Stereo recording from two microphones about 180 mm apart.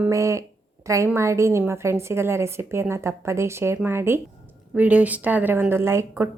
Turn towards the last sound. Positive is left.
turn(degrees=-15)  # may be behind; listen again after turning